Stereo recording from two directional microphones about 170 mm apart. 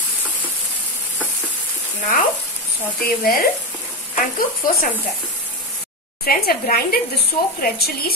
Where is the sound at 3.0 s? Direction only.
60° left (ahead or behind).